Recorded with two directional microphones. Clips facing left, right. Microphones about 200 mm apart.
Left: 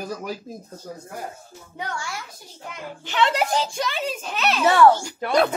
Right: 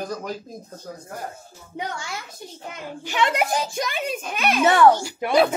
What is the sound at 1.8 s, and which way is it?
A child's voice, 20° right (ahead or behind).